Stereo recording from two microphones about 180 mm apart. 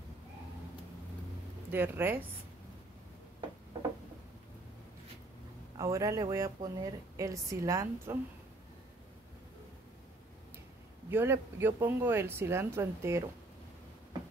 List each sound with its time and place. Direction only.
1.7 s a woman's voice: 10° right (ahead or behind)
5.8 s a woman's voice: 20° right (ahead or behind)
11.1 s a woman's voice: 10° right (ahead or behind)